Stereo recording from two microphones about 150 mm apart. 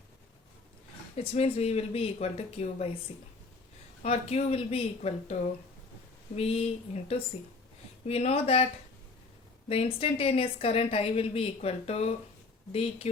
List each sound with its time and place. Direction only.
1.1 s speech: 45° left (ahead or behind)
4.0 s speech: 45° left (ahead or behind)
9.6 s a woman's voice: 40° left (ahead or behind)